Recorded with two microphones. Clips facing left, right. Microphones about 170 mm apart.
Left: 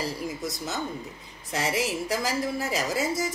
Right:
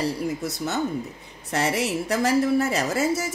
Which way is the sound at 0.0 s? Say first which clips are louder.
Right 5 dB; 65° right (ahead or behind).